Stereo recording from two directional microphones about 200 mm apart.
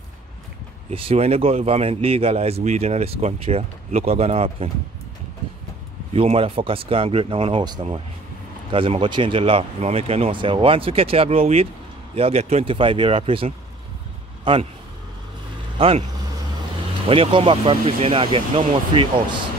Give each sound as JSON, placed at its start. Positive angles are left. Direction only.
{"t": 0.8, "sound": "speech", "side_deg": -30}
{"t": 6.1, "sound": "a man's voice", "side_deg": -30}
{"t": 15.8, "sound": "speech", "side_deg": -25}
{"t": 17.1, "sound": "speech", "side_deg": -30}